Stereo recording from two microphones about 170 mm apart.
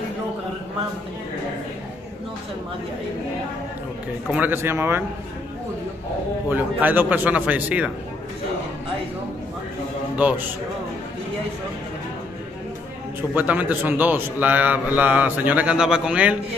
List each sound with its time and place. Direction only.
4.3 s a man's voice: 10° right (ahead or behind)
6.5 s a man's voice: 10° right (ahead or behind)
10.1 s a man's voice: 10° right (ahead or behind)
13.3 s a man's voice: 10° right (ahead or behind)